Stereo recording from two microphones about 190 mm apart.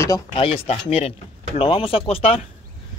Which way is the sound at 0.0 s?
25° left (ahead or behind).